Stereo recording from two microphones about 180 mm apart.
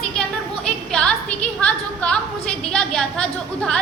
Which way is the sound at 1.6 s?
5° left (ahead or behind).